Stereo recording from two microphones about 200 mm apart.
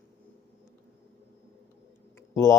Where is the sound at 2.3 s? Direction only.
15° left (ahead or behind).